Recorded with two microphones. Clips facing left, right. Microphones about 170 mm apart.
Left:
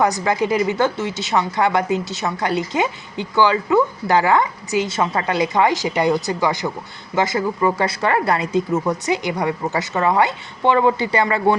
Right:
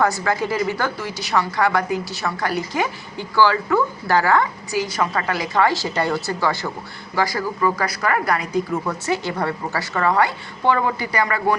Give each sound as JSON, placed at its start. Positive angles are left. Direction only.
{"t": 0.0, "sound": "a woman's voice", "side_deg": 20}